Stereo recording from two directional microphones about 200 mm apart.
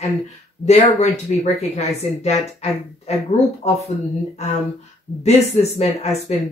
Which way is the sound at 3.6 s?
35° left (ahead or behind).